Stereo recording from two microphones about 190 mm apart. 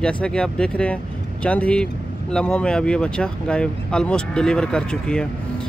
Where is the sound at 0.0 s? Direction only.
5° left (ahead or behind).